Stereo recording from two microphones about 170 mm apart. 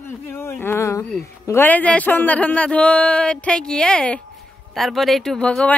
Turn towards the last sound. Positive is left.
turn(degrees=5)  # may be behind; listen again after turning